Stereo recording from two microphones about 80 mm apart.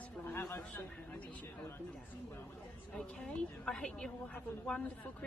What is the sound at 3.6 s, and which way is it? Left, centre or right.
Speech, centre.